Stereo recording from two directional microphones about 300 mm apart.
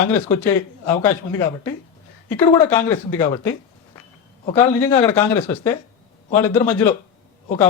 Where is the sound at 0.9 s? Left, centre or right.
Centre.